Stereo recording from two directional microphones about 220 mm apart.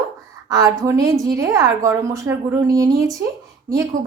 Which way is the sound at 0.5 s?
15° right (ahead or behind).